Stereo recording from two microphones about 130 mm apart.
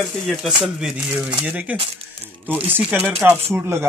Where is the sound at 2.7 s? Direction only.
10° right (ahead or behind).